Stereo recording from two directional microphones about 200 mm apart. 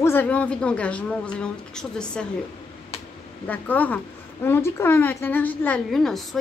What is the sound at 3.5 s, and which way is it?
A woman's voice, 10° left (ahead or behind).